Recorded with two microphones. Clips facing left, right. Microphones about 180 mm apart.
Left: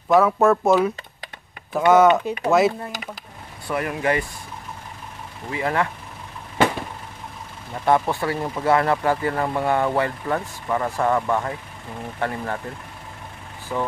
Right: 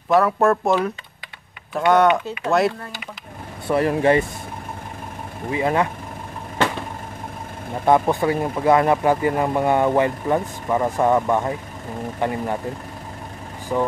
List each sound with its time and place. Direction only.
0.1 s speech: centre (ahead or behind)
3.6 s speech: 30° right (ahead or behind)
5.5 s speech: 20° right (ahead or behind)
7.8 s speech: 20° right (ahead or behind)
13.7 s speech: 35° right (ahead or behind)